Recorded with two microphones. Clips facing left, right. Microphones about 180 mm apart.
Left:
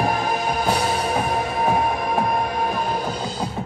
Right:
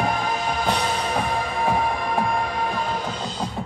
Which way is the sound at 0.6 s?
5° left (ahead or behind).